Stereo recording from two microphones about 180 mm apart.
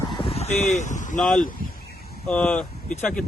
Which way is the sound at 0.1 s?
30° left (ahead or behind).